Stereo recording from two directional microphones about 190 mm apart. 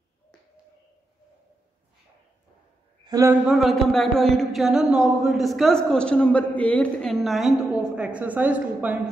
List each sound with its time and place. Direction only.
3.1 s speech: 15° right (ahead or behind)
3.4 s speech: centre (ahead or behind)